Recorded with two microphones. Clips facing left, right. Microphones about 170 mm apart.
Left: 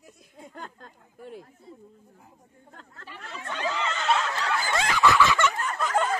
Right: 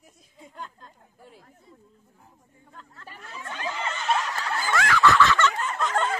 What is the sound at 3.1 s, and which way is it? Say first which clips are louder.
Chatter: left 3 dB; 80° left.